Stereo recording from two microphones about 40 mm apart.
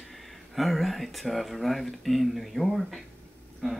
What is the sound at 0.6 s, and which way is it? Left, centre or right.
Speech, centre.